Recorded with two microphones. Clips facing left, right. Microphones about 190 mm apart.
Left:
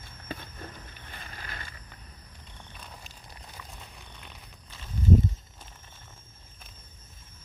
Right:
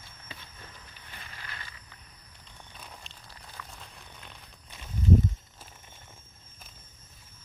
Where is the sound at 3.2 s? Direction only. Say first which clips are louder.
Right 1 dB; 20° left (ahead or behind).